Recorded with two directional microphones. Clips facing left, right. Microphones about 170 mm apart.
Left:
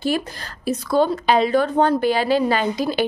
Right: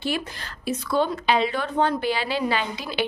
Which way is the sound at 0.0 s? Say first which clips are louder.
Left 5 dB; 40° left (ahead or behind).